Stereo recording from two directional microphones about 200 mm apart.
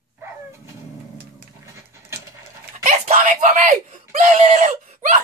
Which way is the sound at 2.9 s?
40° right (ahead or behind).